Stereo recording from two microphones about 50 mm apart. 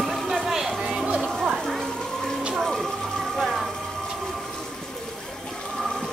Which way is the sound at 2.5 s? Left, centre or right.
Centre.